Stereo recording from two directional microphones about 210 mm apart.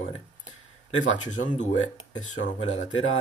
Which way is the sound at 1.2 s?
35° left (ahead or behind).